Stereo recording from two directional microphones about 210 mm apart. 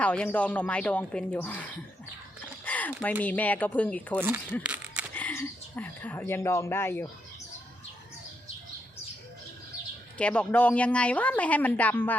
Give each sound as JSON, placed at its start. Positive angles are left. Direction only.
{"t": 0.0, "sound": "a woman's voice", "side_deg": 5}
{"t": 2.6, "sound": "a sound", "side_deg": 5}
{"t": 3.0, "sound": "a woman's voice", "side_deg": 5}
{"t": 4.6, "sound": "a sound", "side_deg": -5}
{"t": 5.1, "sound": "speech", "side_deg": 10}
{"t": 10.2, "sound": "a woman's voice", "side_deg": 5}